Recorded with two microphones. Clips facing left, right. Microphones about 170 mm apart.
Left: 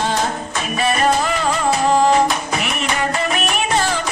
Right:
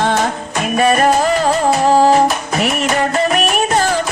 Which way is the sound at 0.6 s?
50° right (ahead or behind).